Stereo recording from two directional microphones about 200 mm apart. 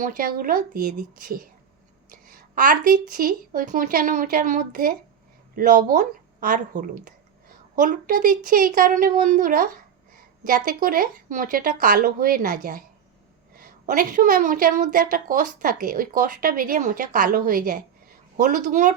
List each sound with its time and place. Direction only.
0.0 s a woman's voice: 45° right (ahead or behind)
13.6 s a woman's voice: 45° right (ahead or behind)